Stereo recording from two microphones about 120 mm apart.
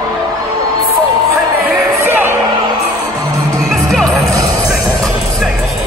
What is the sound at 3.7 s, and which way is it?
Music, centre (ahead or behind).